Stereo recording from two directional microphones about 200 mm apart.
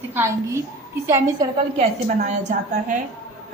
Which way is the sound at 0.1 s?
10° right (ahead or behind).